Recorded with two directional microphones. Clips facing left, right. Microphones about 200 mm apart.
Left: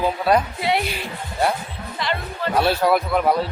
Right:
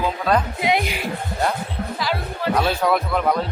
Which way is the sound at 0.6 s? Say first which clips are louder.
Right 1 dB; 15° right (ahead or behind).